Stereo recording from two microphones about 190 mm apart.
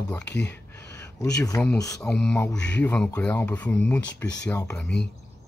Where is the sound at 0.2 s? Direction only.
65° left (ahead or behind).